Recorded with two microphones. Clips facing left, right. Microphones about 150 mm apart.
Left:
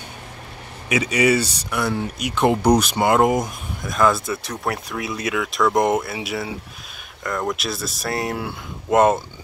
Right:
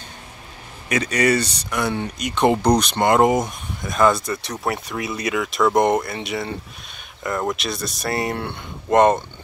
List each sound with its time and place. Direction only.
0.8 s speech: 10° left (ahead or behind)